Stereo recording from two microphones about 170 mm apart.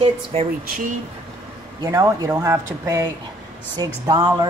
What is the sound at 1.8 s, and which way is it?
Speech, 20° right (ahead or behind).